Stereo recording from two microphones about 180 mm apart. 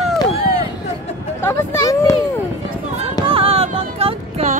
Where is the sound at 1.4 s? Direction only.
15° left (ahead or behind).